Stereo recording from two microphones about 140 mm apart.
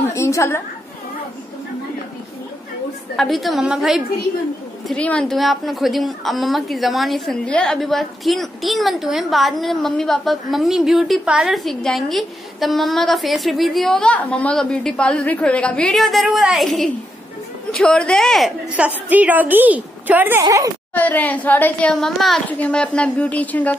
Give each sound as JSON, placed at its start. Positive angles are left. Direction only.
{"t": 0.1, "sound": "a sound", "side_deg": 20}
{"t": 3.2, "sound": "a woman's voice", "side_deg": 0}
{"t": 4.8, "sound": "a woman's voice", "side_deg": 10}
{"t": 18.9, "sound": "a woman's voice", "side_deg": -10}
{"t": 20.4, "sound": "a woman's voice", "side_deg": -25}
{"t": 20.9, "sound": "a child's voice", "side_deg": 10}